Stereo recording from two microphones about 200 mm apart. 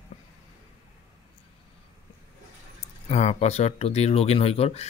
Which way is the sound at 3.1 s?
35° left (ahead or behind).